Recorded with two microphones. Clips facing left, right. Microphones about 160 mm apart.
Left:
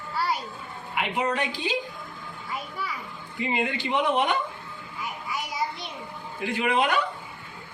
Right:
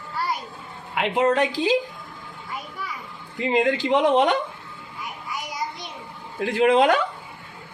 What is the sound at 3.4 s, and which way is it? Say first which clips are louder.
Speech: right 7 dB; 90° right.